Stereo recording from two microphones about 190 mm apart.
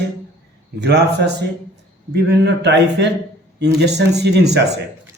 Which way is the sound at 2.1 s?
60° right (ahead or behind).